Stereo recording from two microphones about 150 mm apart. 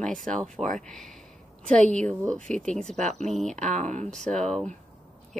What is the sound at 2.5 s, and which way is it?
Speech, 5° left (ahead or behind).